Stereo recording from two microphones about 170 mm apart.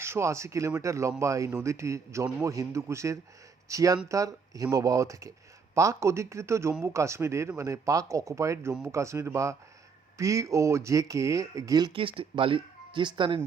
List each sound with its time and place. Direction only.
0.0 s a man's voice: 15° right (ahead or behind)